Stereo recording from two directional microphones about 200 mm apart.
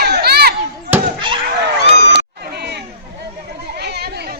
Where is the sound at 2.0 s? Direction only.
60° right (ahead or behind).